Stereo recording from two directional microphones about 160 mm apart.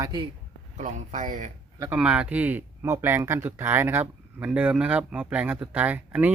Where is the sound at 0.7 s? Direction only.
50° right (ahead or behind).